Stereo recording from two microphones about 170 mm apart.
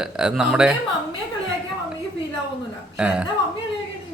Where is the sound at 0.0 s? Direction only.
5° right (ahead or behind).